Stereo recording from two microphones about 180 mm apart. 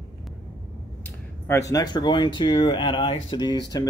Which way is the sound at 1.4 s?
15° left (ahead or behind).